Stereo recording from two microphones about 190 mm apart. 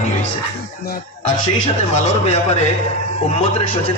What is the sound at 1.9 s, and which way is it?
A man's voice, 35° left (ahead or behind).